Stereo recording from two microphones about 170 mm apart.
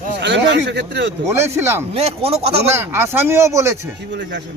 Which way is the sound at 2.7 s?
15° right (ahead or behind).